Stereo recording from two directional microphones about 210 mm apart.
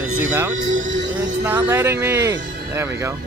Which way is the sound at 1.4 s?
10° right (ahead or behind).